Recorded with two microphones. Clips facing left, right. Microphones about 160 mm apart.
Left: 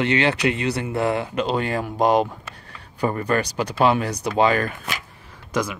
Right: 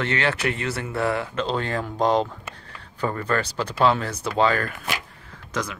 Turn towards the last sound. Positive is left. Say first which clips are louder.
# left 5 dB
turn(degrees=10)  # may be behind; listen again after turning